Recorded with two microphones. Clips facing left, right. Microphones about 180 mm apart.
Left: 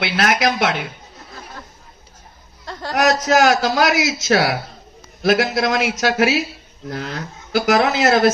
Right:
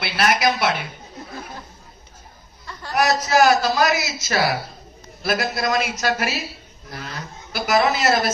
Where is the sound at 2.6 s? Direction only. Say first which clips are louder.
Left 3 dB; 90° left.